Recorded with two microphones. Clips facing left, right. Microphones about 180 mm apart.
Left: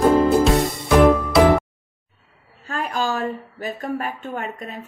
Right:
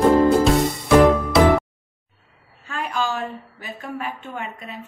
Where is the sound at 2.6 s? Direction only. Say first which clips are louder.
Left 1 dB; 40° left (ahead or behind).